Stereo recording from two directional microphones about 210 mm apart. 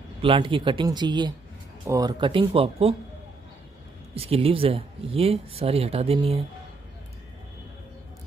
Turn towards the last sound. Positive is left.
turn(degrees=-30)  # may be behind; listen again after turning